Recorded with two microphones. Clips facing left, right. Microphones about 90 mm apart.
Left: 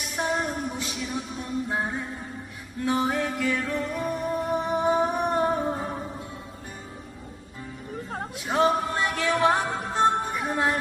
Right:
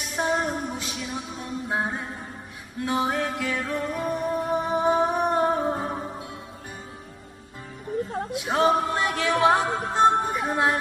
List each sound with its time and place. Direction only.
0.1 s a sound: 15° right (ahead or behind)
1.7 s music: 15° right (ahead or behind)
8.5 s male singing: 10° right (ahead or behind)
9.2 s music: 10° right (ahead or behind)